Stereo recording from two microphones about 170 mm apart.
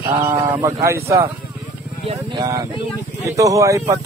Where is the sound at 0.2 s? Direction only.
15° right (ahead or behind).